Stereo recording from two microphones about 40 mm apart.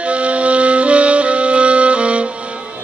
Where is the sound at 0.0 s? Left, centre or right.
Right.